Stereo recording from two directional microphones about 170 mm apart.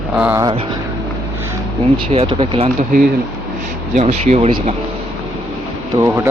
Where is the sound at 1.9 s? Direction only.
30° right (ahead or behind).